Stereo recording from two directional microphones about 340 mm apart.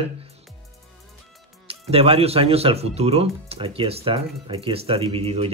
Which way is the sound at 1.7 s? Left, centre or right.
Centre.